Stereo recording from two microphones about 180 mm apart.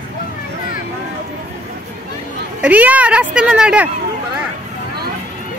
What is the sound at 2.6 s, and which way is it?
Speech, 10° right (ahead or behind).